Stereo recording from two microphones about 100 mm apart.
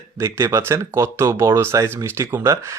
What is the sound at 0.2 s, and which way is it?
Speech, 30° right (ahead or behind).